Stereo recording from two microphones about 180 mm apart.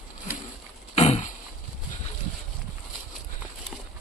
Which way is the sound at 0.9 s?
35° left (ahead or behind).